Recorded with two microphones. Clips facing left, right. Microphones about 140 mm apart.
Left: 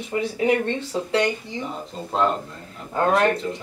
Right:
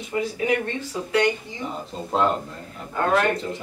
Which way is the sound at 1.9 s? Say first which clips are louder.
Even; centre (ahead or behind).